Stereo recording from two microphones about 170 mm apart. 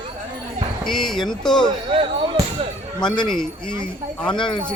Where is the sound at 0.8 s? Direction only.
Centre (ahead or behind).